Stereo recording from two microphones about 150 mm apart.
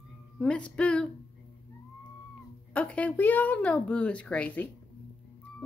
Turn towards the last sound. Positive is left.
turn(degrees=10)  # may be behind; listen again after turning